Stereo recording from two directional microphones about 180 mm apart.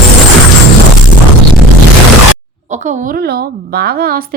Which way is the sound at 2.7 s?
40° right (ahead or behind).